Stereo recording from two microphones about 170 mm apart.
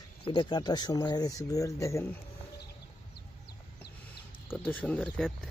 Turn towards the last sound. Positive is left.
turn(degrees=5)  # may be behind; listen again after turning